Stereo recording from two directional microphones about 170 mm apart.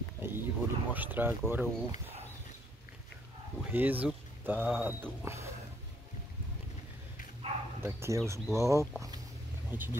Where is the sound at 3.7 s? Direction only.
10° right (ahead or behind).